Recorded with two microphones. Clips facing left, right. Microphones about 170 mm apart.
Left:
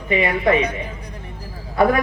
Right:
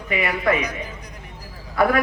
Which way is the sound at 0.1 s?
25° left (ahead or behind).